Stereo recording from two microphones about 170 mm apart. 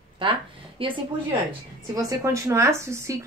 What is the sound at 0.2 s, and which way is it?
Speech, 30° right (ahead or behind).